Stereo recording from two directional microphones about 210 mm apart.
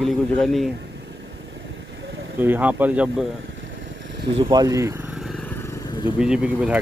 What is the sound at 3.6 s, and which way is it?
Vehicle, 60° right (ahead or behind).